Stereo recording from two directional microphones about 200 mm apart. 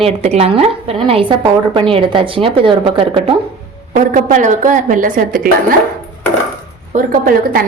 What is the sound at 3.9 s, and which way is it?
A woman's voice, 40° right (ahead or behind).